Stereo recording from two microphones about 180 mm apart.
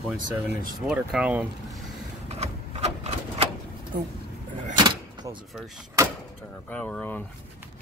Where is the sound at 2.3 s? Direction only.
35° right (ahead or behind).